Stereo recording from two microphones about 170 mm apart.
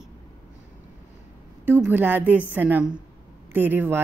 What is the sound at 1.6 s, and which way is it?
A woman's voice, 10° right (ahead or behind).